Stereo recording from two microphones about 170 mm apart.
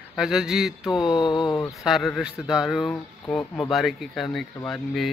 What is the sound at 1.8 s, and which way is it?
Speech, centre (ahead or behind).